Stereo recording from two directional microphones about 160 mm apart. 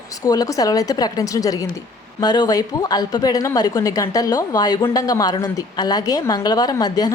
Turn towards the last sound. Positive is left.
turn(degrees=25)  # may be behind; listen again after turning